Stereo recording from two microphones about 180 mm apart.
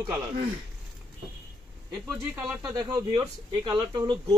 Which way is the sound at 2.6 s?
20° right (ahead or behind).